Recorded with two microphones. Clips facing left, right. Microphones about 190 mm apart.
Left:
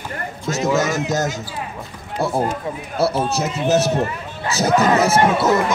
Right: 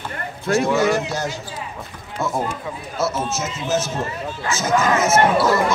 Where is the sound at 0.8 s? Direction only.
45° left (ahead or behind).